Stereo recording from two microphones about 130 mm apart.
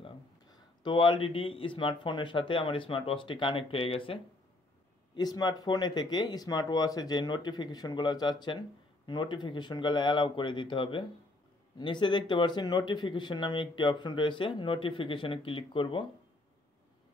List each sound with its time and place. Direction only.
0.0 s speech: 40° left (ahead or behind)
5.1 s speech: 30° left (ahead or behind)